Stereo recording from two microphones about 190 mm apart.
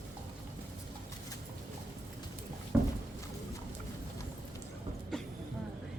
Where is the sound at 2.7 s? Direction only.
Centre (ahead or behind).